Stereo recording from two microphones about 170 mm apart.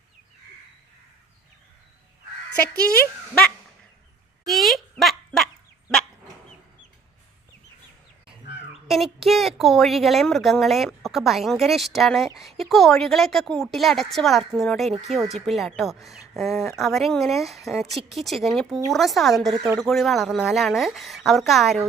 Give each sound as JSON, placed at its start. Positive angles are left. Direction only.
{"t": 4.4, "sound": "a sound", "side_deg": 0}
{"t": 8.9, "sound": "a woman's voice", "side_deg": 0}
{"t": 19.5, "sound": "speech", "side_deg": -15}
{"t": 19.8, "sound": "a woman's voice", "side_deg": 0}